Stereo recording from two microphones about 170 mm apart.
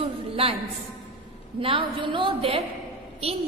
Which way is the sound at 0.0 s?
35° right (ahead or behind).